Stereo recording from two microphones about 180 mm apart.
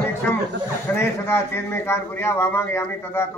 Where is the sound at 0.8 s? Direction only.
10° left (ahead or behind).